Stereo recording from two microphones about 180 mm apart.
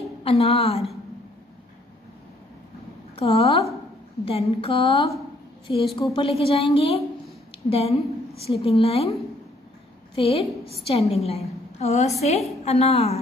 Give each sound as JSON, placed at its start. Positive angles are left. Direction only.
{"t": 0.2, "sound": "a woman's voice", "side_deg": 35}
{"t": 3.2, "sound": "a woman's voice", "side_deg": 35}
{"t": 10.1, "sound": "a woman's voice", "side_deg": 30}